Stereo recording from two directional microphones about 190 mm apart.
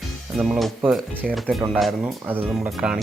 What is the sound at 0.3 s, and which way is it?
Speech, 5° right (ahead or behind).